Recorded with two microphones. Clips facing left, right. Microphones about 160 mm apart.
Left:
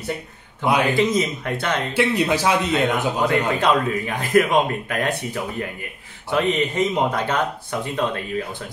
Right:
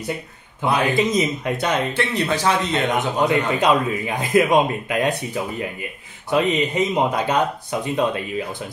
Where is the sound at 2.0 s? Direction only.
10° left (ahead or behind).